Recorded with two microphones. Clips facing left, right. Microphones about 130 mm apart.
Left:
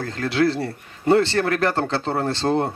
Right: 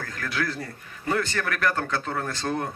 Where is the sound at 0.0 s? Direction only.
30° left (ahead or behind).